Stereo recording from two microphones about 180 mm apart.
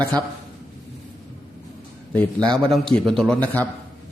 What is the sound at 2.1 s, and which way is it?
A man's voice, 10° left (ahead or behind).